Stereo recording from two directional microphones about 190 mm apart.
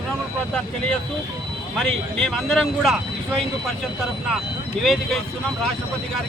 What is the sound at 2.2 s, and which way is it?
Speech, centre (ahead or behind).